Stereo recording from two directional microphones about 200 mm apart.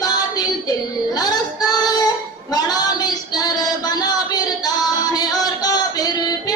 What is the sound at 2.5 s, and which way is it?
Child singing, 20° left (ahead or behind).